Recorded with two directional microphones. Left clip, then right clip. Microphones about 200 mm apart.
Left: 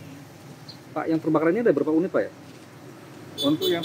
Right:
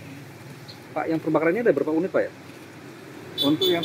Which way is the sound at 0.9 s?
45° left (ahead or behind).